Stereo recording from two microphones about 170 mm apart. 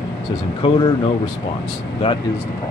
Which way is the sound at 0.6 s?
25° left (ahead or behind).